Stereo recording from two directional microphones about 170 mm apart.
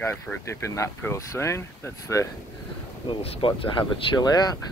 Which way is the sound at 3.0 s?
30° left (ahead or behind).